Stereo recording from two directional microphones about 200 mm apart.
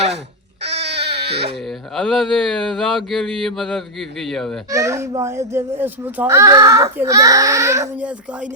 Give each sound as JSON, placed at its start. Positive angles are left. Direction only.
{"t": 0.6, "sound": "cat", "side_deg": -60}
{"t": 2.0, "sound": "speech", "side_deg": 0}
{"t": 4.7, "sound": "a child's voice", "side_deg": -15}